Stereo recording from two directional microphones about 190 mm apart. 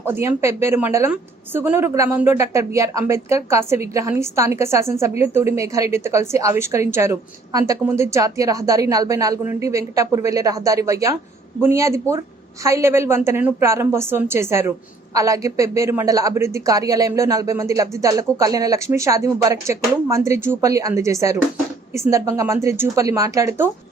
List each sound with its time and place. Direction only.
0.0 s a woman's voice: 10° right (ahead or behind)